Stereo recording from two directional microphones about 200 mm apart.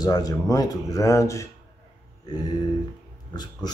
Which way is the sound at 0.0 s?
20° left (ahead or behind).